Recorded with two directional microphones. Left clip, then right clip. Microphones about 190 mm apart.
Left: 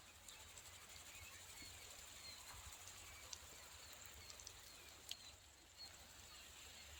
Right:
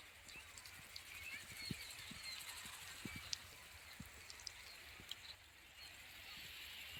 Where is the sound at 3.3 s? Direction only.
45° left (ahead or behind).